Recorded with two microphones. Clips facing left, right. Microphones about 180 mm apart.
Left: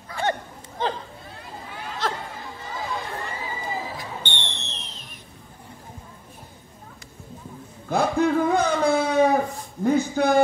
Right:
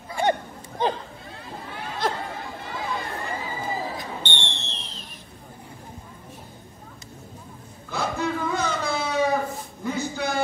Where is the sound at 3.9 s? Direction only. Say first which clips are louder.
Right 1 dB; 30° right (ahead or behind).